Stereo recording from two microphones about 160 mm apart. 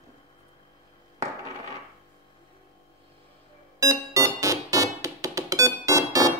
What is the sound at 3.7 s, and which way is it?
Music, 20° right (ahead or behind).